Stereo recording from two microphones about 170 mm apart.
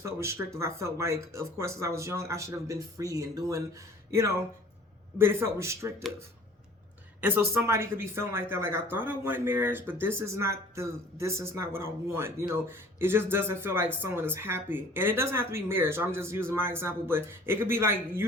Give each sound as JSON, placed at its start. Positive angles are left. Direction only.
{"t": 0.0, "sound": "speech", "side_deg": -15}
{"t": 7.2, "sound": "speech", "side_deg": -10}